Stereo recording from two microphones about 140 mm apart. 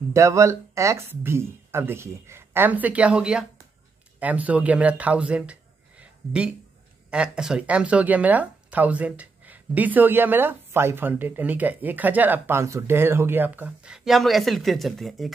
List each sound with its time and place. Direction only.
0.1 s speech: 20° right (ahead or behind); by 15.3 s centre (ahead or behind)